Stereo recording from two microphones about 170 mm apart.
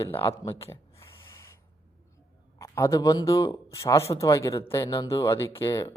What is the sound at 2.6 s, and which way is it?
A man's voice, 20° left (ahead or behind).